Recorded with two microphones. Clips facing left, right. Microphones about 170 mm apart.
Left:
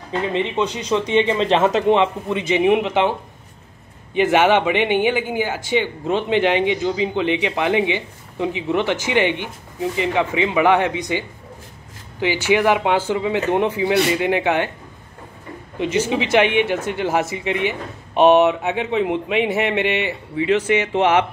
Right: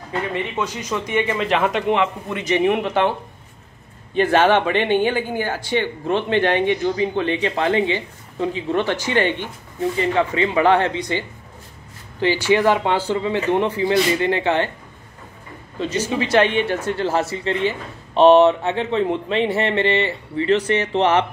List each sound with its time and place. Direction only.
0.1 s a man's voice: 20° left (ahead or behind)
16.1 s speech: 15° left (ahead or behind)